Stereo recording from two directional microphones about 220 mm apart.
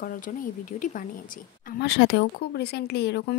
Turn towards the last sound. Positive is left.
turn(degrees=50)  # may be behind; listen again after turning